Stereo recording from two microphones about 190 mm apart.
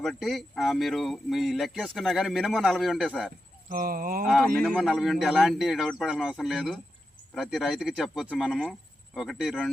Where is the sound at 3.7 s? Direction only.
50° right (ahead or behind).